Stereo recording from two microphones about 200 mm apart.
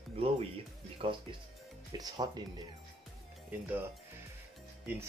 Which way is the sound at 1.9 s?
20° right (ahead or behind).